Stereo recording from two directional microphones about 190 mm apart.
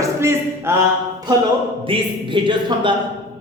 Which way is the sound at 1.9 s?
25° right (ahead or behind).